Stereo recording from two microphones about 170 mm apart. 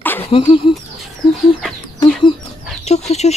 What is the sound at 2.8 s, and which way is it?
Speech, 40° left (ahead or behind).